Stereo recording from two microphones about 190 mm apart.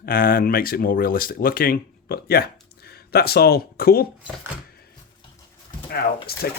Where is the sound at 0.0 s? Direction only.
50° left (ahead or behind).